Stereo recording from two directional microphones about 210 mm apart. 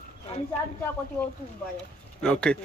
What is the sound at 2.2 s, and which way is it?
Speech, 5° left (ahead or behind).